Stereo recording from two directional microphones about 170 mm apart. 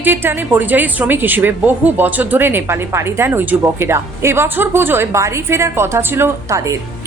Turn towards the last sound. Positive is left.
turn(degrees=-20)  # may be behind; listen again after turning